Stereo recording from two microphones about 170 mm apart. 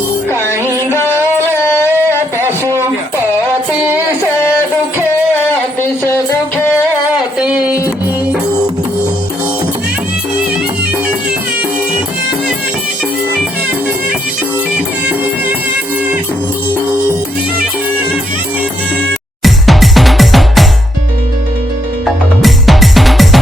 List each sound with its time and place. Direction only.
1.6 s carnatic music: 15° left (ahead or behind)
2.4 s a sound: 15° right (ahead or behind)
19.4 s music: centre (ahead or behind)
22.4 s music: centre (ahead or behind)